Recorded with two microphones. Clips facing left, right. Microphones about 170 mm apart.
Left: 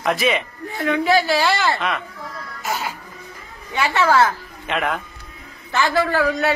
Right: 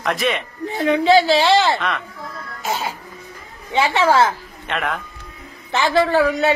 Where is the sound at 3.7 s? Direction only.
25° right (ahead or behind).